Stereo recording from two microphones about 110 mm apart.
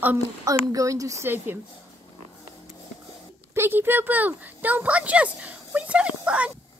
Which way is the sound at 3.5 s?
20° right (ahead or behind).